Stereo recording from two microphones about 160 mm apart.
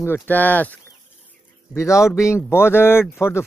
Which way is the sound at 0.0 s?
15° left (ahead or behind).